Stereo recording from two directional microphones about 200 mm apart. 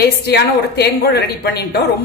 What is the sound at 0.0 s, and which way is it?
A woman's voice, 55° left (ahead or behind).